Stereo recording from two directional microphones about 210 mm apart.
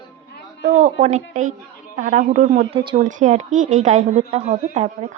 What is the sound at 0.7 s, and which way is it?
A woman's voice, 35° right (ahead or behind).